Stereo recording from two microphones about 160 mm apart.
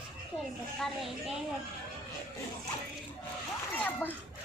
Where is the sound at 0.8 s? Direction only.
Centre (ahead or behind).